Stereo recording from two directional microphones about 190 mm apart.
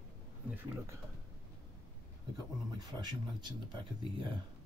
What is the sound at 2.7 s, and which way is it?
Speech, 20° right (ahead or behind).